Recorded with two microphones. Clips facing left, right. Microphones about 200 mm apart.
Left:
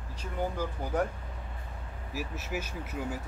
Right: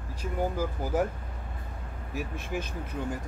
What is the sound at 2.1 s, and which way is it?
Speech, 5° left (ahead or behind).